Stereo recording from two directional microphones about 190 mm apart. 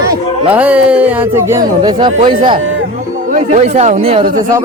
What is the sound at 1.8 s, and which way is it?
Speech, 25° right (ahead or behind).